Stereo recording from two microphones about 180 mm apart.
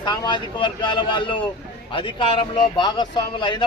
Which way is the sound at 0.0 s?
25° left (ahead or behind).